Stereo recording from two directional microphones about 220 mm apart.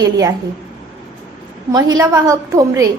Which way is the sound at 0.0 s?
15° right (ahead or behind).